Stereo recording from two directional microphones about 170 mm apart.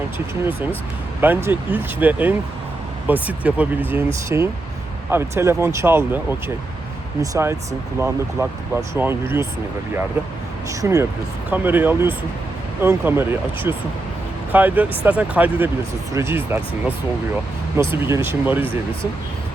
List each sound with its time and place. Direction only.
1.2 s speech: 10° right (ahead or behind)
7.2 s speech: 20° right (ahead or behind)
10.7 s speech: 20° right (ahead or behind)